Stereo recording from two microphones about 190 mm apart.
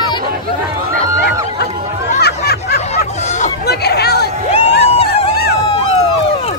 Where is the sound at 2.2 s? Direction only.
55° left (ahead or behind).